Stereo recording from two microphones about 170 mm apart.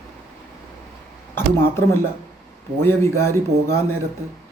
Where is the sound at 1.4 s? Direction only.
15° left (ahead or behind).